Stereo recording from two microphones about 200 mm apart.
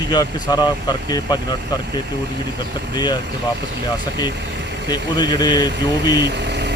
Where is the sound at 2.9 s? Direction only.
20° left (ahead or behind).